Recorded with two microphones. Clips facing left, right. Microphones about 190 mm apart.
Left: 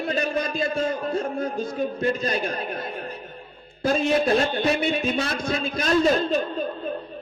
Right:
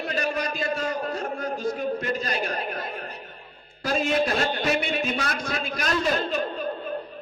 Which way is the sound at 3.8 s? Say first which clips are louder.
Left 3 dB; 25° left (ahead or behind).